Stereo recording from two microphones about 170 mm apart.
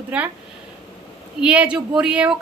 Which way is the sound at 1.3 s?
5° right (ahead or behind).